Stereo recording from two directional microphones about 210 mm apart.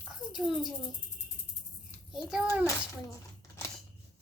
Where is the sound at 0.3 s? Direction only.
Centre (ahead or behind).